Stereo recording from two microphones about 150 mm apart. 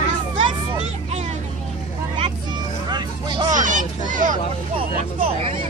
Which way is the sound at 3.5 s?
60° right (ahead or behind).